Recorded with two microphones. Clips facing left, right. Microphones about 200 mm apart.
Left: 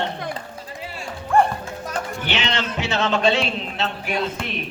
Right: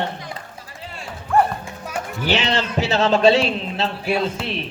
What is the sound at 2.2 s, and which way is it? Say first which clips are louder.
A man's voice: right 6 dB; 35° right (ahead or behind).